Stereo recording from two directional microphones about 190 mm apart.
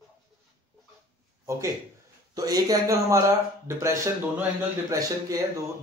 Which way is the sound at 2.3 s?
20° right (ahead or behind).